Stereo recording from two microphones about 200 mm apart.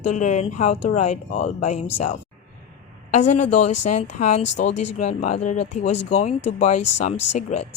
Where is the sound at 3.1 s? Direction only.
35° left (ahead or behind).